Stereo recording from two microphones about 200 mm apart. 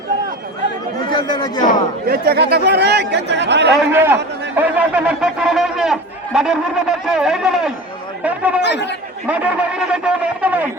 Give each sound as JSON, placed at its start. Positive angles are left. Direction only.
{"t": 1.1, "sound": "chatter", "side_deg": 20}
{"t": 2.0, "sound": "speech", "side_deg": -50}
{"t": 3.8, "sound": "a man's voice", "side_deg": -10}
{"t": 8.6, "sound": "a man's voice", "side_deg": 60}
{"t": 9.2, "sound": "a man's voice", "side_deg": -5}